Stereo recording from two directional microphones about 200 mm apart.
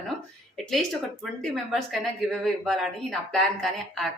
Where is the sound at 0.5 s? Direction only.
Centre (ahead or behind).